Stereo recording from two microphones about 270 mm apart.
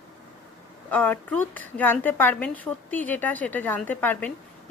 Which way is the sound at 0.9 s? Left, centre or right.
Centre.